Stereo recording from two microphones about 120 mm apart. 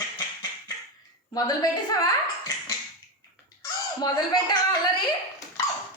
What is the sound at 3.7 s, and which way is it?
Speech, 35° left (ahead or behind).